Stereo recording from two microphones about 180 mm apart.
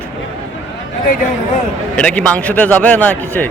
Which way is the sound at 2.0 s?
5° left (ahead or behind).